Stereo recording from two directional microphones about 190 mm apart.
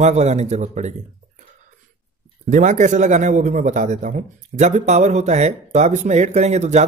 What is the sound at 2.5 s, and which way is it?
Speech, 40° right (ahead or behind).